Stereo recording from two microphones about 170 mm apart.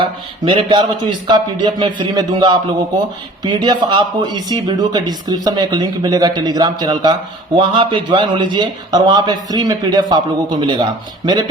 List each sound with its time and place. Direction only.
0.0 s speech: 30° right (ahead or behind)